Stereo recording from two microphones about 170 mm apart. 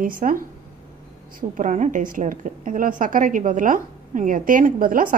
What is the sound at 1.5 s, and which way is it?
A woman's voice, 45° right (ahead or behind).